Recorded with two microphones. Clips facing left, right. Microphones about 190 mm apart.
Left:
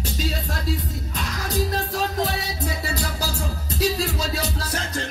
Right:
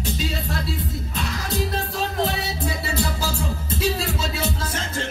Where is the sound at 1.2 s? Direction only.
40° left (ahead or behind).